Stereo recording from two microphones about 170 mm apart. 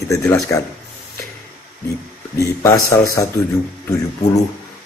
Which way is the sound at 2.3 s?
20° left (ahead or behind).